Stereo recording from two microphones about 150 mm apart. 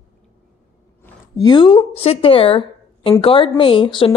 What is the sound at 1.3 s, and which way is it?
A woman's voice, 30° left (ahead or behind).